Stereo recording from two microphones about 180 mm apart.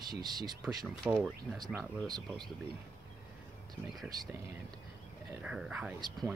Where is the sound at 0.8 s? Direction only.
5° right (ahead or behind).